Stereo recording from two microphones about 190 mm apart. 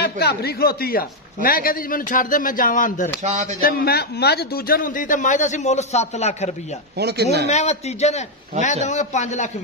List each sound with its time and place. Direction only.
0.0 s a man's voice: 55° left (ahead or behind)
3.2 s speech: 40° right (ahead or behind)
3.6 s a man's voice: 55° left (ahead or behind); by 6.5 s 35° left (ahead or behind)
7.0 s speech: 60° right (ahead or behind)
7.4 s a man's voice: 35° left (ahead or behind)